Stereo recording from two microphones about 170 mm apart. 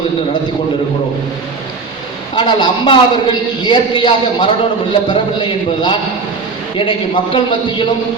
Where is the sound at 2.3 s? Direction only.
25° left (ahead or behind).